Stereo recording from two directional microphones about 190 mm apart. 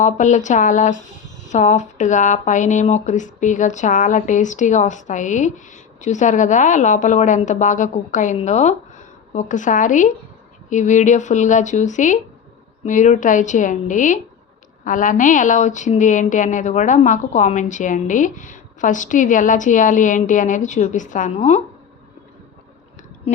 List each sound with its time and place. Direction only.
0.0 s speech: 40° left (ahead or behind)